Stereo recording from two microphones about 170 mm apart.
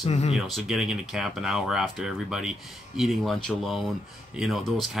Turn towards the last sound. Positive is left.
turn(degrees=0)  # may be behind; listen again after turning